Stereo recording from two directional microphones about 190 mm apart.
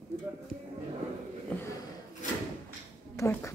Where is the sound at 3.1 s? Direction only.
15° left (ahead or behind).